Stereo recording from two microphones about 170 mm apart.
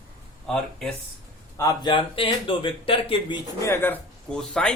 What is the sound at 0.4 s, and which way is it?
Speech, 5° left (ahead or behind).